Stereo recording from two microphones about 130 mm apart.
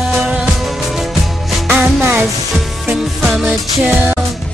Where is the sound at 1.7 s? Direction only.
10° right (ahead or behind).